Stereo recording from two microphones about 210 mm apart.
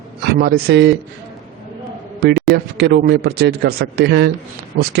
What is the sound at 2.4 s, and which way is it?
A man's voice, 50° right (ahead or behind).